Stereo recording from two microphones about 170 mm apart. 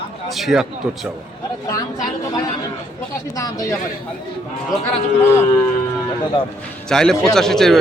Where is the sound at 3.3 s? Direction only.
20° left (ahead or behind).